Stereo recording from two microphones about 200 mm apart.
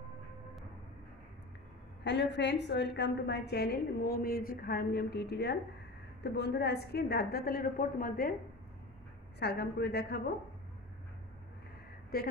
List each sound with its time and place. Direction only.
2.0 s a woman's voice: 60° left (ahead or behind)
9.4 s a woman's voice: 55° left (ahead or behind)
12.1 s a woman's voice: 50° left (ahead or behind)